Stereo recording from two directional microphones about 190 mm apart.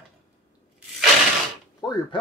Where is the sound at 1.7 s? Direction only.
20° left (ahead or behind).